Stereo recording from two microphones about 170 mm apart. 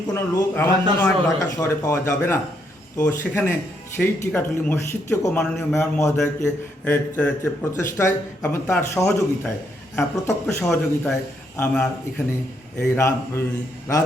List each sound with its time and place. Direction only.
0.1 s speech: 15° left (ahead or behind)
10.6 s speech: 15° left (ahead or behind)